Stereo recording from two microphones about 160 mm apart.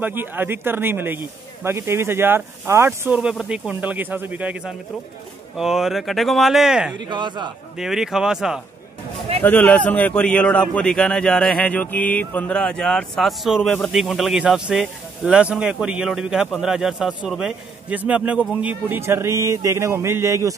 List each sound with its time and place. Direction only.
0.0 s a man's voice: 10° right (ahead or behind)
3.2 s a man's voice: 5° right (ahead or behind)
7.1 s a man's voice: 30° right (ahead or behind)
7.7 s speech: 5° right (ahead or behind)
9.4 s a man's voice: 10° left (ahead or behind); by 20.5 s 20° right (ahead or behind)